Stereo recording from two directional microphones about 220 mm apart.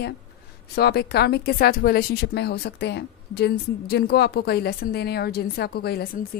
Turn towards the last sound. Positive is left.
turn(degrees=45)  # may be behind; listen again after turning